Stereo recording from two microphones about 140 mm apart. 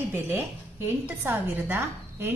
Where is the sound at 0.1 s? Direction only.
15° right (ahead or behind).